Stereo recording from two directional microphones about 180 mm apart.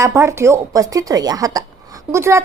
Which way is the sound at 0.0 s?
15° right (ahead or behind).